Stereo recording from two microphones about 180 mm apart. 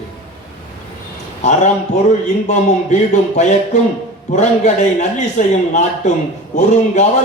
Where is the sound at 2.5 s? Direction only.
40° left (ahead or behind).